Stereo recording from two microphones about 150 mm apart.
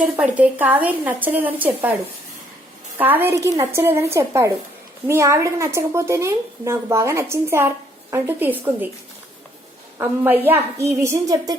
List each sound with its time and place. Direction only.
0.0 s a woman's voice: 10° right (ahead or behind)
3.0 s a woman's voice: 15° right (ahead or behind)
10.0 s a woman's voice: 15° right (ahead or behind)